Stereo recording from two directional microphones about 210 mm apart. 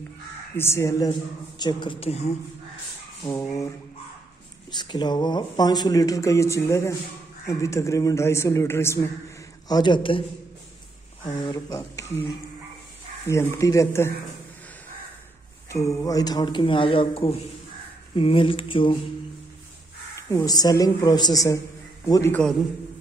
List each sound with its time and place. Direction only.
0.6 s speech: 10° left (ahead or behind); by 2.3 s 30° left (ahead or behind)
3.3 s speech: 15° left (ahead or behind)
4.6 s speech: 20° left (ahead or behind)
11.4 s speech: 15° left (ahead or behind)
15.7 s speech: 15° left (ahead or behind)
20.2 s speech: 15° left (ahead or behind)